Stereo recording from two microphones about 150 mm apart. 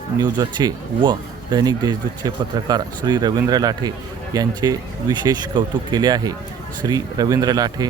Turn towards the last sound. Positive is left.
turn(degrees=-25)  # may be behind; listen again after turning